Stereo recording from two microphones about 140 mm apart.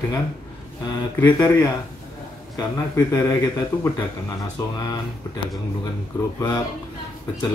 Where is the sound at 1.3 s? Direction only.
25° left (ahead or behind).